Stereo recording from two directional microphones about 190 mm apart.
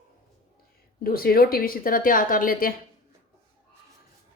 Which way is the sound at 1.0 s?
50° left (ahead or behind).